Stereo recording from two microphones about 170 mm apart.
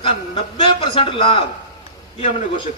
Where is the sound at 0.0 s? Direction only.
35° left (ahead or behind).